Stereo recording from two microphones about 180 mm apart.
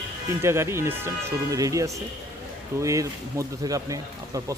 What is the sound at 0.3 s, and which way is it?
Speech, 15° right (ahead or behind).